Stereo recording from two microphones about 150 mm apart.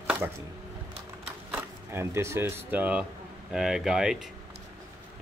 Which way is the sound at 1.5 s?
15° right (ahead or behind).